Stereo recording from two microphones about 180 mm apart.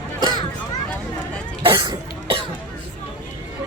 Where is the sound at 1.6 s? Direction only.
25° right (ahead or behind).